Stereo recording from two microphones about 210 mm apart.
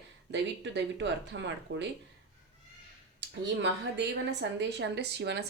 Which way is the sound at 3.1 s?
55° right (ahead or behind).